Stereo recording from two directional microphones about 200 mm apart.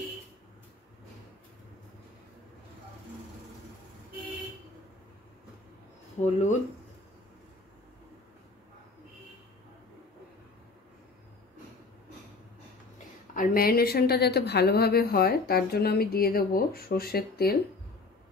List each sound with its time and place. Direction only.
6.2 s speech: 35° left (ahead or behind)
13.3 s a woman's voice: 45° left (ahead or behind)